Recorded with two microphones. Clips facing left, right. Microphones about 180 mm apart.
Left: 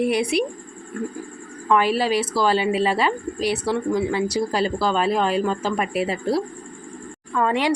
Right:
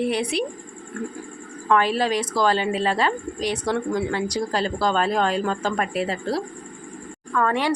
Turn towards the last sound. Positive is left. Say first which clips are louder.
# left 1 dB
turn(degrees=15)  # may be behind; listen again after turning